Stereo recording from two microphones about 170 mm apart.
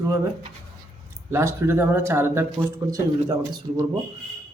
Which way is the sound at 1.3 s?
15° right (ahead or behind).